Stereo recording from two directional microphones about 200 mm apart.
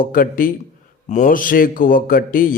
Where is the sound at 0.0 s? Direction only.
45° left (ahead or behind).